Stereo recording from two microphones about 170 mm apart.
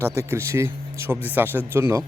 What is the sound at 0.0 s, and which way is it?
Speech, 15° right (ahead or behind).